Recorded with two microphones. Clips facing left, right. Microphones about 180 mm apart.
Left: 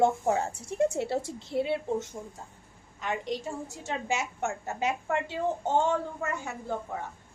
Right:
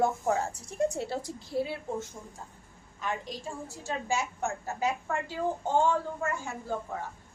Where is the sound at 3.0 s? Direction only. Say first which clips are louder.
Left 3 dB; 20° left (ahead or behind).